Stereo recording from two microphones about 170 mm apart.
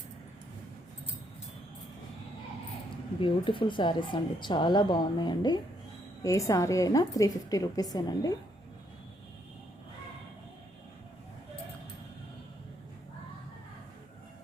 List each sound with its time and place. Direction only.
3.2 s speech: 30° left (ahead or behind)